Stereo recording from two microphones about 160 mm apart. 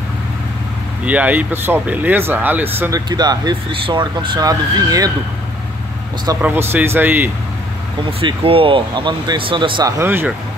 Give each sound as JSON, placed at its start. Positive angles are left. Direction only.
{"t": 1.0, "sound": "speech", "side_deg": -10}
{"t": 3.1, "sound": "speech", "side_deg": -25}
{"t": 6.4, "sound": "speech", "side_deg": -15}
{"t": 8.2, "sound": "speech", "side_deg": -35}
{"t": 9.9, "sound": "speech", "side_deg": -15}